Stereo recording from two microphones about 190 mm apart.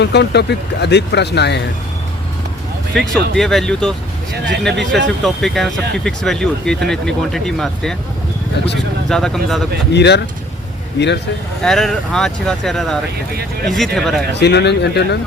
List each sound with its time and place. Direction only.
0.0 s speech: 65° left (ahead or behind)
2.9 s speech: centre (ahead or behind)
9.0 s speech: centre (ahead or behind)
9.9 s speech: 65° left (ahead or behind)
11.6 s speech: centre (ahead or behind)
13.3 s speech: 55° right (ahead or behind)
13.7 s speech: centre (ahead or behind)
14.3 s speech: 65° left (ahead or behind)